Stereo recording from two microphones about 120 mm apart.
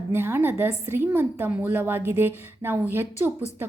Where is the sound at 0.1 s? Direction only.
20° right (ahead or behind).